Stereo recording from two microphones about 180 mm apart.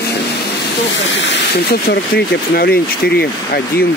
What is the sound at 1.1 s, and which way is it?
Speech, 90° left.